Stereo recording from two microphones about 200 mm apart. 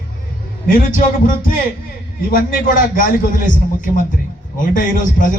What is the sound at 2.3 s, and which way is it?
A man's voice, 45° left (ahead or behind).